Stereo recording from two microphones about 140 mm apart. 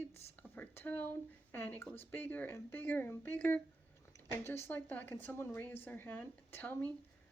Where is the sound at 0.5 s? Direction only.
15° left (ahead or behind).